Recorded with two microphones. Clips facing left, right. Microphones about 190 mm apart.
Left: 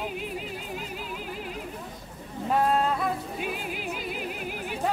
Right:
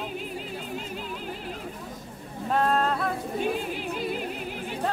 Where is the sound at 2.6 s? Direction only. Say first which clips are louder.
Even; 10° left (ahead or behind).